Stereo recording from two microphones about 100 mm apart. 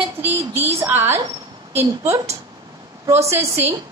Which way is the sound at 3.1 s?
30° right (ahead or behind).